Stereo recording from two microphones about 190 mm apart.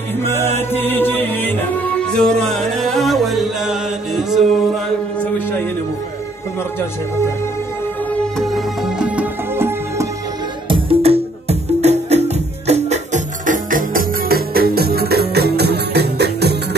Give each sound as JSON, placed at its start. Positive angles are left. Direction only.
{"t": 0.2, "sound": "music", "side_deg": 15}
{"t": 8.4, "sound": "music", "side_deg": 0}
{"t": 10.7, "sound": "music", "side_deg": -30}